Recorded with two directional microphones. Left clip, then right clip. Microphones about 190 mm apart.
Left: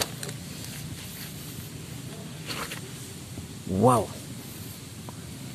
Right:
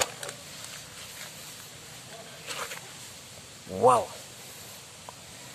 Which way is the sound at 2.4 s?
15° right (ahead or behind).